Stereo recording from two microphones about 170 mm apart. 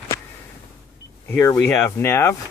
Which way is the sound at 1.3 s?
10° left (ahead or behind).